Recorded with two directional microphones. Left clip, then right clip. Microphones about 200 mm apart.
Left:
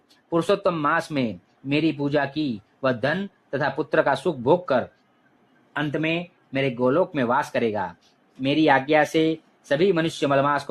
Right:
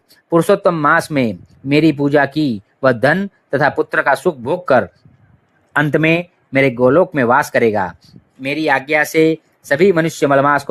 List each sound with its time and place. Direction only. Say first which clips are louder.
0.3 s speech: right 9 dB; 35° right (ahead or behind)